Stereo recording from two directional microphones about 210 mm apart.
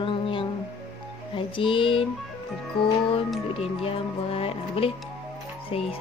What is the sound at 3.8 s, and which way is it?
A woman's voice, 25° left (ahead or behind).